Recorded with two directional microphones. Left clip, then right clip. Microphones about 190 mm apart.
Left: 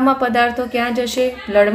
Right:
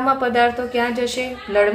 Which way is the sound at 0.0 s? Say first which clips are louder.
Left 2 dB; 25° left (ahead or behind).